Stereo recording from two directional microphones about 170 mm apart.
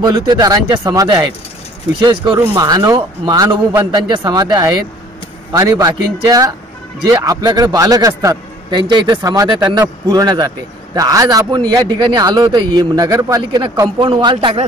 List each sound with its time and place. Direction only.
0.0 s a man's voice: 25° right (ahead or behind)